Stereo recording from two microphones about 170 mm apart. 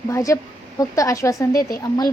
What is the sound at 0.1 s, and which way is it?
A child's voice, 20° left (ahead or behind).